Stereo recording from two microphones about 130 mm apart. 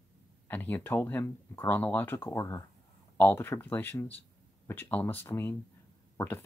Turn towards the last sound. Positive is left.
turn(degrees=20)  # may be behind; listen again after turning